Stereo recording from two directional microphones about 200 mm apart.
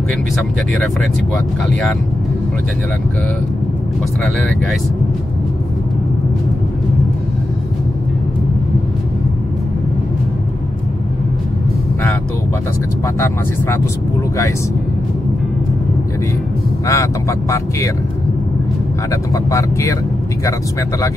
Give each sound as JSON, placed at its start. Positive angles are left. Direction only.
{"t": 13.0, "sound": "speech", "side_deg": 10}
{"t": 16.8, "sound": "speech", "side_deg": 15}
{"t": 19.3, "sound": "speech", "side_deg": 15}